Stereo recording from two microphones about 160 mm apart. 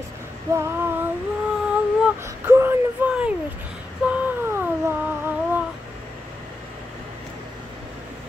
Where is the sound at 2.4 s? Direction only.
15° right (ahead or behind).